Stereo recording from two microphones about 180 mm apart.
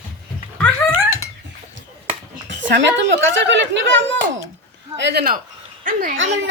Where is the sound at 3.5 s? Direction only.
90° right.